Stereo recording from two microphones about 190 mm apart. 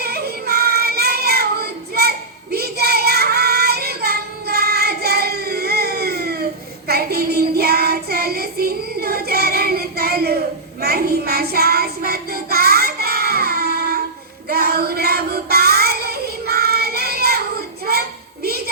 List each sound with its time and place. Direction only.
0.0 s child singing: 55° right (ahead or behind)